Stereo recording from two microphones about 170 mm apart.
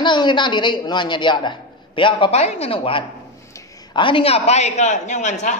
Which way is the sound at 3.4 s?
20° left (ahead or behind).